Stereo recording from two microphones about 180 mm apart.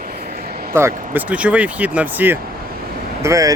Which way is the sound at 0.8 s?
10° right (ahead or behind).